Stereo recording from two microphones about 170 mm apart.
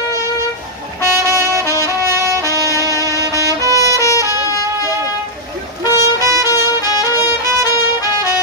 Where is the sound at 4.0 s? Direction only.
20° left (ahead or behind).